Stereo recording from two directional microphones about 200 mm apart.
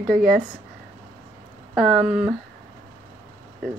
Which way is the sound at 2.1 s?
5° right (ahead or behind).